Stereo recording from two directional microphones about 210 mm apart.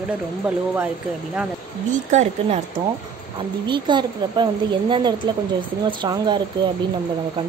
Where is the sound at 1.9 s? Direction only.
35° right (ahead or behind).